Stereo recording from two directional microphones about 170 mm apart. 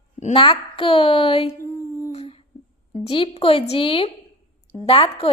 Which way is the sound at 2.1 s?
35° left (ahead or behind).